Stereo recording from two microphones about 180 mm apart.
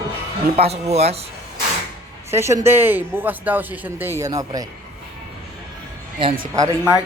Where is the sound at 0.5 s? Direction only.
35° right (ahead or behind).